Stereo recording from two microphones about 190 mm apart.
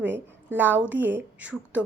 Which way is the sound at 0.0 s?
10° right (ahead or behind).